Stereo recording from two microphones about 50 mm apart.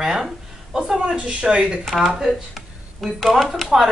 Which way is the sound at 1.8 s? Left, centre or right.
Centre.